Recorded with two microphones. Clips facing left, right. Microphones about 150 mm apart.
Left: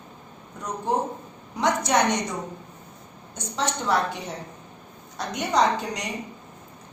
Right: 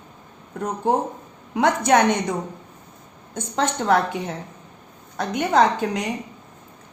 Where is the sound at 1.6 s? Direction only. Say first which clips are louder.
Right 5 dB; 55° right (ahead or behind).